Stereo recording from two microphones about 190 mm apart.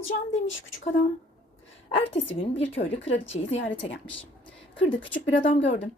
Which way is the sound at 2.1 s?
75° left (ahead or behind).